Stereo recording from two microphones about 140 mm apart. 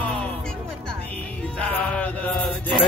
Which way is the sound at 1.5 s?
10° left (ahead or behind).